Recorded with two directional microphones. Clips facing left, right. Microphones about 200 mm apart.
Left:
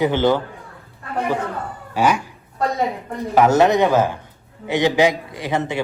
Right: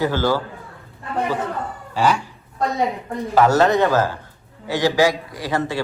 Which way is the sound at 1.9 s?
10° left (ahead or behind).